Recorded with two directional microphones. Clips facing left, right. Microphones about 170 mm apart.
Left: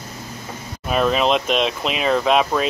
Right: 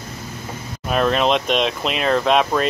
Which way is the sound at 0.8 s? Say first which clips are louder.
Even; centre (ahead or behind).